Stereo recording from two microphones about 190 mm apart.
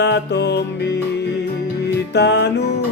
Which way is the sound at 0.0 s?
65° left (ahead or behind).